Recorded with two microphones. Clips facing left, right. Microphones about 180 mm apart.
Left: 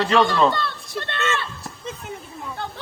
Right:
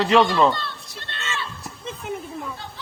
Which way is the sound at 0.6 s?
60° left (ahead or behind).